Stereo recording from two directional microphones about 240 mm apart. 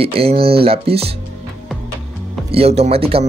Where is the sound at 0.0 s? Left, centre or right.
Right.